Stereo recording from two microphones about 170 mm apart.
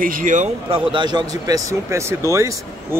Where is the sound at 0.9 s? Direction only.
25° right (ahead or behind).